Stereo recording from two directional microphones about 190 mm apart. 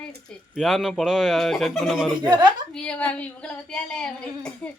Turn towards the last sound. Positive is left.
turn(degrees=5)  # may be behind; listen again after turning